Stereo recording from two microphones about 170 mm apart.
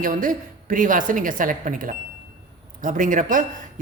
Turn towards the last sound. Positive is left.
turn(degrees=-50)  # may be behind; listen again after turning